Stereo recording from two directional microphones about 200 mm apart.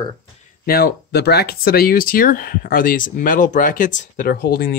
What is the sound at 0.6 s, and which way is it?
Speech, 50° left (ahead or behind).